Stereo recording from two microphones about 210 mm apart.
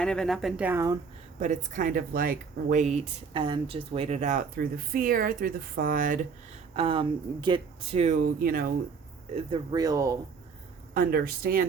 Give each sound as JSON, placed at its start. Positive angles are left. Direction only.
{"t": 0.0, "sound": "a woman's voice", "side_deg": 5}
{"t": 1.4, "sound": "speech", "side_deg": -35}
{"t": 6.7, "sound": "speech", "side_deg": -25}
{"t": 9.3, "sound": "speech", "side_deg": -20}
{"t": 10.9, "sound": "speech", "side_deg": -45}